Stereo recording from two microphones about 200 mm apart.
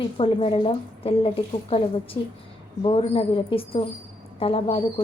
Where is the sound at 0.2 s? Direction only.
30° left (ahead or behind).